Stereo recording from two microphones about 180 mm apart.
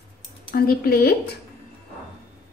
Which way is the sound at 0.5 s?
55° left (ahead or behind).